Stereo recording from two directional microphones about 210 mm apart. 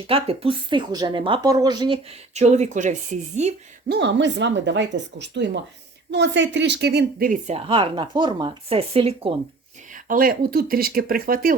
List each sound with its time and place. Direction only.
0.1 s a woman's voice: 25° right (ahead or behind)
2.3 s speech: 30° right (ahead or behind)
3.8 s a woman's voice: 50° right (ahead or behind); by 9.3 s 30° right (ahead or behind)
9.9 s speech: 40° right (ahead or behind)